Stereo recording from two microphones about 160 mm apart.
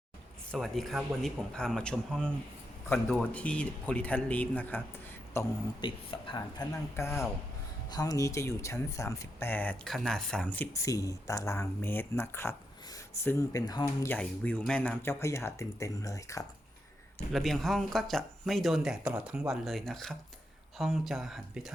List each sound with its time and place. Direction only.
0.5 s speech: centre (ahead or behind)
5.8 s speech: 30° left (ahead or behind)
6.9 s speech: 15° left (ahead or behind)
14.2 s speech: 10° left (ahead or behind)
17.3 s speech: centre (ahead or behind)